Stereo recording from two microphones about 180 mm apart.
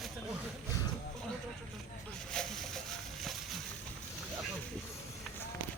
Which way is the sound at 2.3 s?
5° left (ahead or behind).